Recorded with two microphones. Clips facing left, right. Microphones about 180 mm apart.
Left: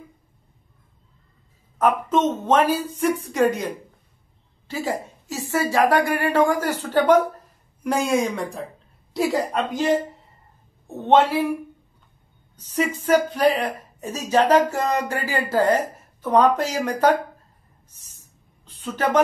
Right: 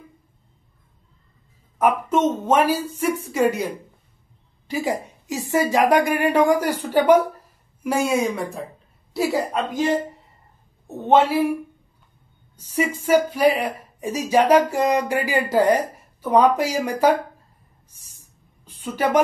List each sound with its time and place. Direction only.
1.8 s speech: 10° right (ahead or behind)
11.0 s speech: 10° right (ahead or behind)
12.5 s speech: 10° right (ahead or behind)
17.8 s a sound: 10° right (ahead or behind)